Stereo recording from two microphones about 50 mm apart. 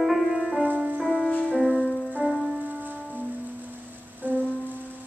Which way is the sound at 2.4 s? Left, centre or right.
Right.